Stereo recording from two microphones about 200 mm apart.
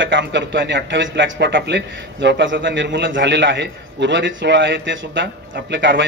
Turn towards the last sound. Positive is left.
turn(degrees=-65)  # may be behind; listen again after turning